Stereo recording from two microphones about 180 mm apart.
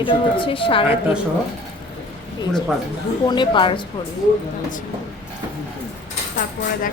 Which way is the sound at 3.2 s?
25° left (ahead or behind).